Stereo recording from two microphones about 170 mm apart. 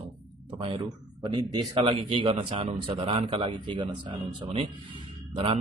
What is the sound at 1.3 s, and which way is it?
Speech, 30° right (ahead or behind).